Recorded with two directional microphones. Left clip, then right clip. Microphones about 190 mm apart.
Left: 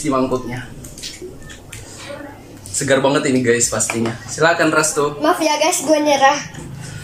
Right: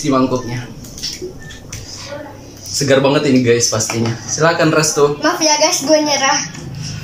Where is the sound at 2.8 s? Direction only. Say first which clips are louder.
Right 3 dB; centre (ahead or behind).